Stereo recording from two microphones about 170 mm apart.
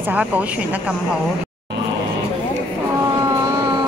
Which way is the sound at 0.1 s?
10° right (ahead or behind).